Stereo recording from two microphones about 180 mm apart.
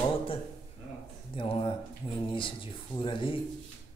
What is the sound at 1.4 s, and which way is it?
Speech, 30° left (ahead or behind).